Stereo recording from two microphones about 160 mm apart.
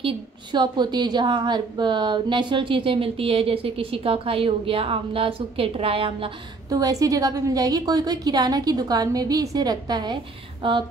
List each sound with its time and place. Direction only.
0.0 s a woman's voice: 30° right (ahead or behind)
6.7 s a woman's voice: 20° right (ahead or behind)